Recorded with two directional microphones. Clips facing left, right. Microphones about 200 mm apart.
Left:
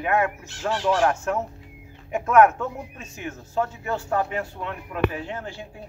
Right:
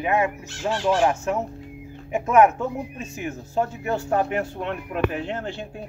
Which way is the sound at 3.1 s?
15° right (ahead or behind).